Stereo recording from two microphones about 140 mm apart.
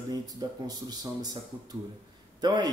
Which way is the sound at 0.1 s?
30° right (ahead or behind).